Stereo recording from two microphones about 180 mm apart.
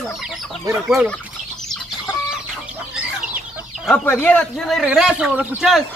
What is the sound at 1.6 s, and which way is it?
Chicken, 5° left (ahead or behind).